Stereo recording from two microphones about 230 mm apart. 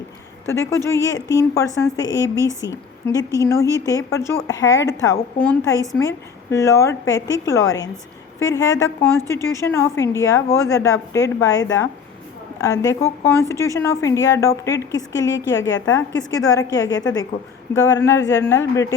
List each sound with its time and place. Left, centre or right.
0.4 s a woman's voice: centre